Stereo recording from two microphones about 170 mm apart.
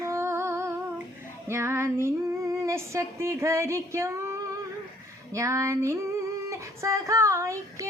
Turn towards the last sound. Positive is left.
turn(degrees=-15)  # may be behind; listen again after turning